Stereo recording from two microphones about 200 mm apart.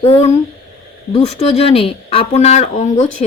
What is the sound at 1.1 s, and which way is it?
A woman's voice, 30° left (ahead or behind).